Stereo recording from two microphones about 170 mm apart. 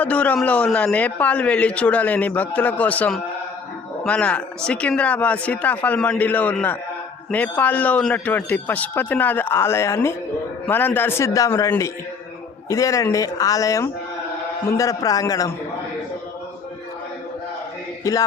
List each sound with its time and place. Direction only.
0.0 s a man's voice: 10° left (ahead or behind)
18.0 s a woman's voice: 20° left (ahead or behind)